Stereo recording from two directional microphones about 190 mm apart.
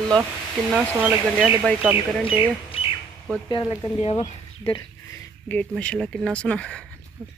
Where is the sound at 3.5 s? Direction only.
20° left (ahead or behind).